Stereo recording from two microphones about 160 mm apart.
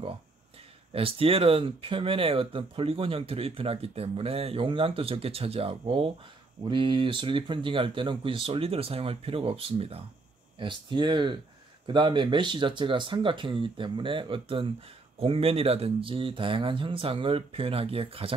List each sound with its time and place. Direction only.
0.9 s speech: 35° right (ahead or behind)